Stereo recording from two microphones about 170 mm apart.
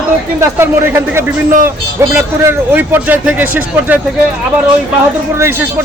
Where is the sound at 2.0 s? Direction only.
15° right (ahead or behind).